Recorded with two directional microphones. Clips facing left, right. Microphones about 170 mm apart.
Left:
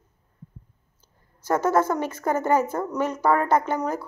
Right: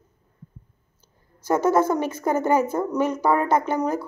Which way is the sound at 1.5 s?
20° right (ahead or behind).